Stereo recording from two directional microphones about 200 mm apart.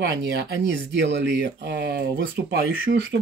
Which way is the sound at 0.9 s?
60° right (ahead or behind).